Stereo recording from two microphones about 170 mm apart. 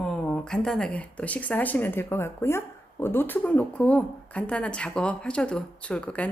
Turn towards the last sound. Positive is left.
turn(degrees=5)  # may be behind; listen again after turning